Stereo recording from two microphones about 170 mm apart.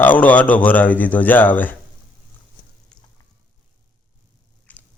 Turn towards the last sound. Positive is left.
turn(degrees=10)  # may be behind; listen again after turning